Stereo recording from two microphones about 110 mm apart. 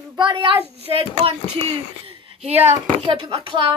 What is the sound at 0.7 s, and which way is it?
Speech, 60° right (ahead or behind).